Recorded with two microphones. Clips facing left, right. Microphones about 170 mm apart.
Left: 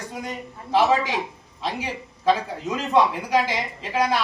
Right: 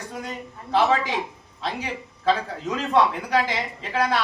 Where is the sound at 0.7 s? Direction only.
5° left (ahead or behind).